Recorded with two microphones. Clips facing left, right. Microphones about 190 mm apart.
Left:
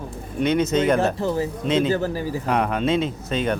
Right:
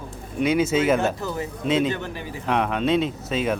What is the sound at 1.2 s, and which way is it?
Speech, 30° left (ahead or behind).